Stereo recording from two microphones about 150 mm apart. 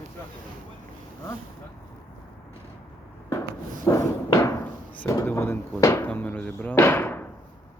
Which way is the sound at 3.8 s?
20° left (ahead or behind).